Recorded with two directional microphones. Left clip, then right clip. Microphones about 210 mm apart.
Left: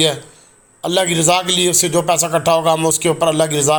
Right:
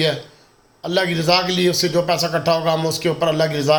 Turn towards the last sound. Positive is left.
turn(degrees=20)  # may be behind; listen again after turning